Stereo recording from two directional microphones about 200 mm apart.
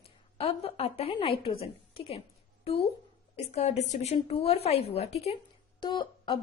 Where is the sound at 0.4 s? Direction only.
30° left (ahead or behind).